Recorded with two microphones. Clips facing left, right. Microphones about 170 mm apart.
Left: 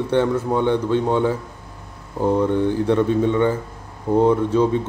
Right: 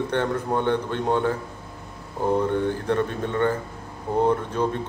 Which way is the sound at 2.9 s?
15° left (ahead or behind).